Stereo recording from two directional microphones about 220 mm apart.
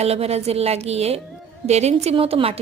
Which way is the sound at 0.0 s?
30° right (ahead or behind).